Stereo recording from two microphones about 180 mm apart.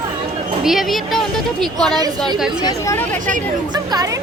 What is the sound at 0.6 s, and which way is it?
Speech, centre (ahead or behind).